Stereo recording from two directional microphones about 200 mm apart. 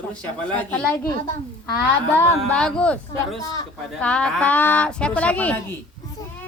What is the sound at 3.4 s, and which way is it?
Speech, 20° left (ahead or behind).